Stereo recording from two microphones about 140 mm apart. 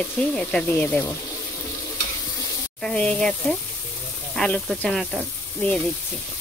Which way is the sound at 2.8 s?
5° left (ahead or behind).